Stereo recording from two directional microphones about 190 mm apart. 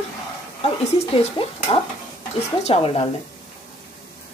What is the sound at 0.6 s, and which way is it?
Speech, 35° left (ahead or behind).